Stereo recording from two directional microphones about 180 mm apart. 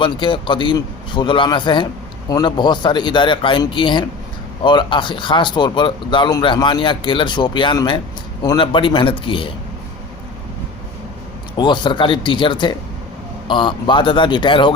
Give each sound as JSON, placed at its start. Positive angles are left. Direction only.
{"t": 0.0, "sound": "speech", "side_deg": 30}
{"t": 11.5, "sound": "speech", "side_deg": 25}